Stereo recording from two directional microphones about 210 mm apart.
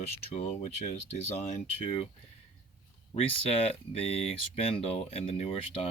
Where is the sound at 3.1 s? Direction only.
25° left (ahead or behind).